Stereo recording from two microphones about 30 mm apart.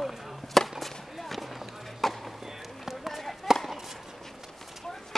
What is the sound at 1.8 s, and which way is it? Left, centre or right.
Chop, centre.